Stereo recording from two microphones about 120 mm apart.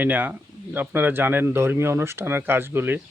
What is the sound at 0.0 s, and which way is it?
Speech, 15° right (ahead or behind).